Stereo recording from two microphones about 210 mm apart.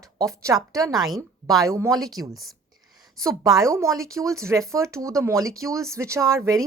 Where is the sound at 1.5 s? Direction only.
15° right (ahead or behind).